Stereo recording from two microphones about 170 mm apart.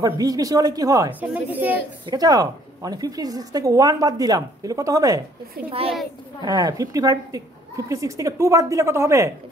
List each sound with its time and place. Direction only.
0.0 s a woman's voice: 20° right (ahead or behind)
2.0 s a woman's voice: 20° right (ahead or behind)
5.7 s a child's voice: 35° right (ahead or behind)
6.4 s a woman's voice: 20° right (ahead or behind)